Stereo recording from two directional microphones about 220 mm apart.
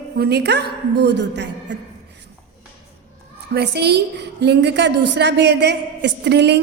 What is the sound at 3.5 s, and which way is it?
A woman's voice, 50° right (ahead or behind).